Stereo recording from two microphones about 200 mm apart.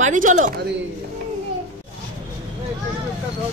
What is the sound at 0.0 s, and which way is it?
Speech, 40° right (ahead or behind).